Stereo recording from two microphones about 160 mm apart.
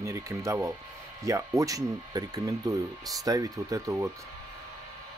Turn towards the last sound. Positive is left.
turn(degrees=-20)  # may be behind; listen again after turning